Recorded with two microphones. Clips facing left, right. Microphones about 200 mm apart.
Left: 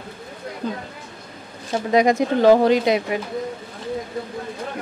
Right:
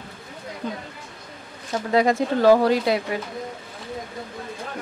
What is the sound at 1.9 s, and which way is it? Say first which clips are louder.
Speech: left 3 dB; 15° left (ahead or behind).